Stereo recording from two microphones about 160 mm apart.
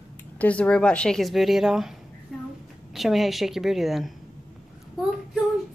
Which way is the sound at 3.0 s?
Centre (ahead or behind).